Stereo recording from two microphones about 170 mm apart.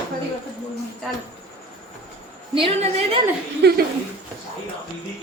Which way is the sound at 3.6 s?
80° right.